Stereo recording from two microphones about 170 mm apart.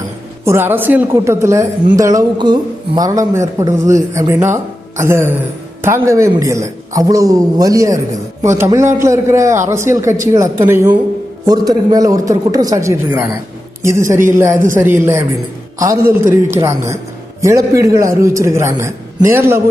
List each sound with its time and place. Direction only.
0.4 s a woman's voice: 15° right (ahead or behind)